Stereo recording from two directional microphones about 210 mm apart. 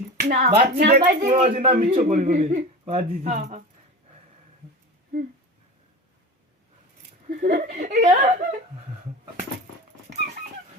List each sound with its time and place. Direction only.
0.2 s speech: 35° right (ahead or behind)
0.6 s speech: 50° right (ahead or behind)
1.2 s a man's voice: 35° right (ahead or behind)
7.3 s speech: 45° right (ahead or behind)
10.2 s a sound: 35° right (ahead or behind)